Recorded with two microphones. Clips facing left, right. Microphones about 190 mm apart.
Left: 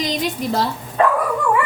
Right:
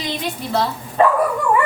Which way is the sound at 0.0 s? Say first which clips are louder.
Left 4 dB; 40° left (ahead or behind).